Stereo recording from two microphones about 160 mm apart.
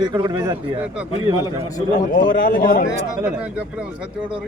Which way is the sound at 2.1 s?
60° left (ahead or behind).